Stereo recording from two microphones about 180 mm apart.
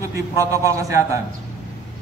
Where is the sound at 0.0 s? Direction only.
20° right (ahead or behind).